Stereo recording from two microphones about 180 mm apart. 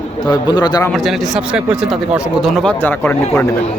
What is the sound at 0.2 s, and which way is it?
Speech, 25° left (ahead or behind).